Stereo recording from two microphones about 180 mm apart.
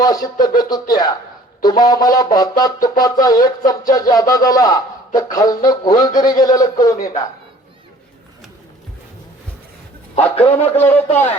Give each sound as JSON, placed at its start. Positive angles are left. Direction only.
{"t": 0.0, "sound": "a man's voice", "side_deg": 20}
{"t": 10.4, "sound": "a man's voice", "side_deg": 10}